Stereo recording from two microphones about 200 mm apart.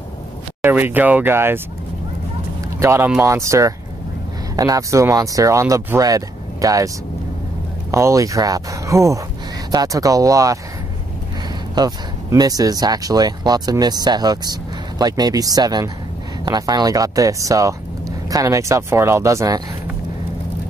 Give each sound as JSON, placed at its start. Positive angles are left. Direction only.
{"t": 0.6, "sound": "speech", "side_deg": -10}
{"t": 2.8, "sound": "speech", "side_deg": -15}
{"t": 7.9, "sound": "speech", "side_deg": -15}
{"t": 11.7, "sound": "speech", "side_deg": -20}